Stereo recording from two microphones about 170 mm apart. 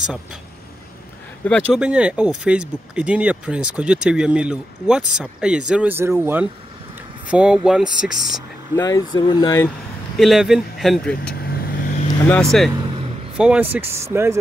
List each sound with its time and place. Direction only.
0.0 s speech: 5° right (ahead or behind)
1.4 s speech: 5° left (ahead or behind)
1.8 s speech: 5° right (ahead or behind)
8.7 s speech: 20° left (ahead or behind)
10.1 s speech: centre (ahead or behind)
11.3 s vehicle: 65° left (ahead or behind)
12.3 s speech: 5° left (ahead or behind); by 14.4 s 15° right (ahead or behind)